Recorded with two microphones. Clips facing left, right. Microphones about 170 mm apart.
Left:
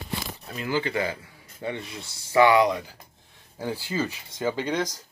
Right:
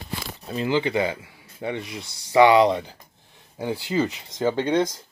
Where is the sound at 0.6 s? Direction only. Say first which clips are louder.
Right 4 dB; 20° right (ahead or behind).